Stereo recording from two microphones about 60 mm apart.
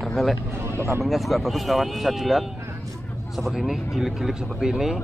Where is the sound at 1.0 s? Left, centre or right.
Centre.